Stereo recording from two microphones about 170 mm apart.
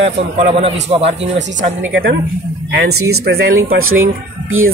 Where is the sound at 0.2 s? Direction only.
90° right.